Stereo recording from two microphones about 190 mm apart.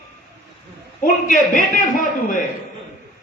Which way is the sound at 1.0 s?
45° left (ahead or behind).